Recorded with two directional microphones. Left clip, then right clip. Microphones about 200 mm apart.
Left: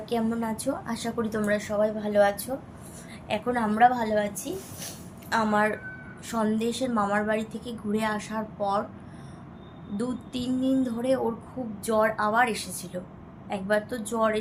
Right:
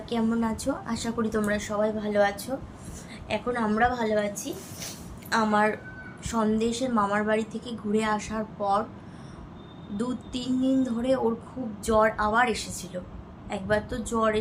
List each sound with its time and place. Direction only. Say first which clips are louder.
0.1 s a woman's voice: right 1 dB; 5° left (ahead or behind)
5.3 s a woman's voice: right 1 dB; 5° left (ahead or behind)
10.0 s a woman's voice: even; 5° left (ahead or behind)